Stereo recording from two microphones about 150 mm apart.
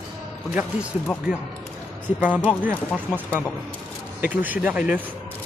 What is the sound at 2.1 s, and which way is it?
Speech, 10° right (ahead or behind).